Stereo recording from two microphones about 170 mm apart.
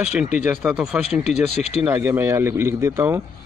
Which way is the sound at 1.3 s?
40° left (ahead or behind).